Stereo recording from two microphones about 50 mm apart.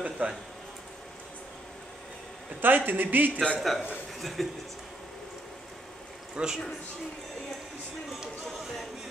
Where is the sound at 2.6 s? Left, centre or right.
Right.